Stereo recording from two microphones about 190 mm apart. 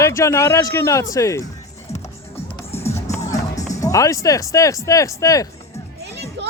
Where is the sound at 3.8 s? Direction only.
15° left (ahead or behind).